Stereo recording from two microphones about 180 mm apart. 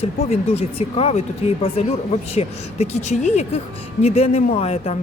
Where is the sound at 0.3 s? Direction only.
35° left (ahead or behind).